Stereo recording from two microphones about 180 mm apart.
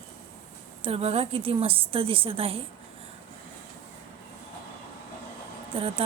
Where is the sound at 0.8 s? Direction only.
35° right (ahead or behind).